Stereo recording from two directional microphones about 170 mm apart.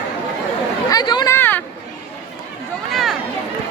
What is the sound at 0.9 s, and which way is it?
Speech, 25° left (ahead or behind).